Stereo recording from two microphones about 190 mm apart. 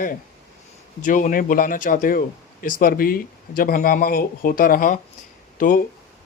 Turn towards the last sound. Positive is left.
turn(degrees=45)  # may be behind; listen again after turning